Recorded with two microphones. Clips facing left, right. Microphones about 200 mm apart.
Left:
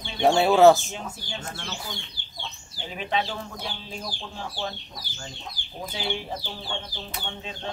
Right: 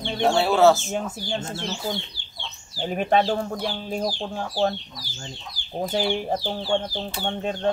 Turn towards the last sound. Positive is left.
turn(degrees=-55)  # may be behind; listen again after turning